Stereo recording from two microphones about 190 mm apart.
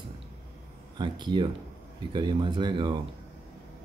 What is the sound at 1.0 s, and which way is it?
Speech, 25° right (ahead or behind).